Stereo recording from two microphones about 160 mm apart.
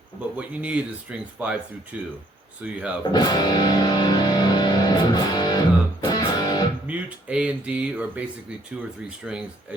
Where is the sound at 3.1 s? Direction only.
25° left (ahead or behind).